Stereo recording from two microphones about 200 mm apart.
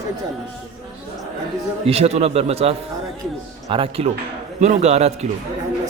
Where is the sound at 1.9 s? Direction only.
30° right (ahead or behind).